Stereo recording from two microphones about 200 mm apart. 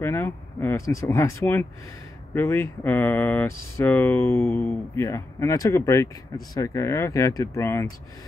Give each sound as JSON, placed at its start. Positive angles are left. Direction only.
{"t": 0.0, "sound": "speech", "side_deg": 10}